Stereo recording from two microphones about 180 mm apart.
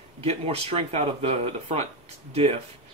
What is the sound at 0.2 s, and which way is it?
Speech, 35° right (ahead or behind).